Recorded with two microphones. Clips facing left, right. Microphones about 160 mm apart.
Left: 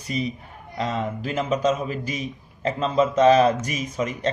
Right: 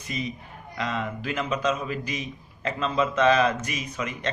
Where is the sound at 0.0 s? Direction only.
35° left (ahead or behind).